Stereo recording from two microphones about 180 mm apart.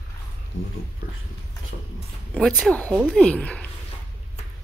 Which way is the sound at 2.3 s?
5° left (ahead or behind).